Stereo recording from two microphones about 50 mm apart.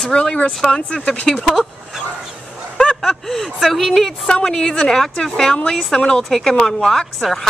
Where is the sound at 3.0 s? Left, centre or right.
Centre.